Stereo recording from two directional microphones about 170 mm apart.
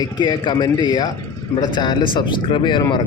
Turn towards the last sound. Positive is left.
turn(degrees=25)  # may be behind; listen again after turning